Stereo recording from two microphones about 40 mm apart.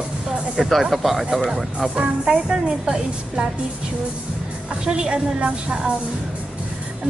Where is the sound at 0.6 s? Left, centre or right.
Centre.